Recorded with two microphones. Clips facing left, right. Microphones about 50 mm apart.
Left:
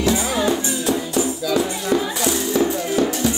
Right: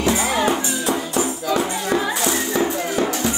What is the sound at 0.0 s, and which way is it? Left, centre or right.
Music, right.